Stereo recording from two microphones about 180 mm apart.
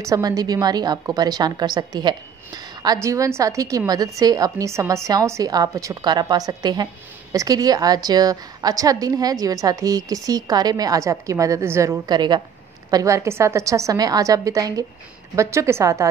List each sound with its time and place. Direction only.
0.0 s a woman's voice: 20° right (ahead or behind)